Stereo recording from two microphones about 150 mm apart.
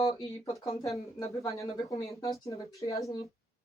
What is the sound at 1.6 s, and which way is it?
Speech, 20° left (ahead or behind).